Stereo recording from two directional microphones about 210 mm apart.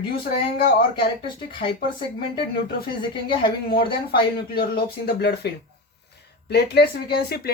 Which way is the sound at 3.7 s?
45° left (ahead or behind).